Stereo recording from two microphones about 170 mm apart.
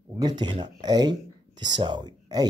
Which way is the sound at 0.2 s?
25° right (ahead or behind).